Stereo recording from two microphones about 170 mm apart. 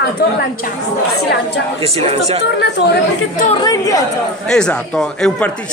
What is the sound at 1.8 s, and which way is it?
Speech, 35° right (ahead or behind).